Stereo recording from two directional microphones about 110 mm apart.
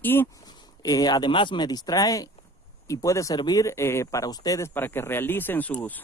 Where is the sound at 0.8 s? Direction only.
35° left (ahead or behind).